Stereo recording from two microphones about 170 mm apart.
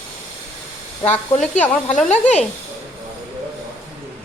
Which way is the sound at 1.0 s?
10° left (ahead or behind).